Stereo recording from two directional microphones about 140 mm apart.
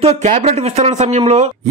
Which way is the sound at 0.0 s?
50° right (ahead or behind).